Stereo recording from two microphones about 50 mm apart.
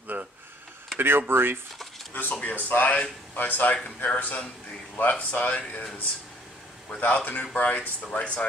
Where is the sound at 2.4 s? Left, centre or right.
Left.